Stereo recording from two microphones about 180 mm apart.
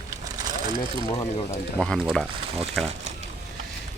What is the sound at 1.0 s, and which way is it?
Speech, 15° left (ahead or behind).